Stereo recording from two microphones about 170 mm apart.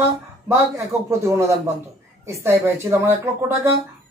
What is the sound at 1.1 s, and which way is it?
Speech, 15° right (ahead or behind).